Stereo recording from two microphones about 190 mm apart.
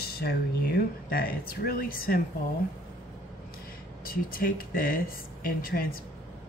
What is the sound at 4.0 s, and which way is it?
Speech, 50° left (ahead or behind).